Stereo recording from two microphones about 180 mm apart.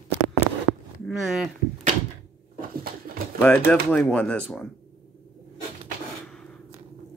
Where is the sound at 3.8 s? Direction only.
5° left (ahead or behind).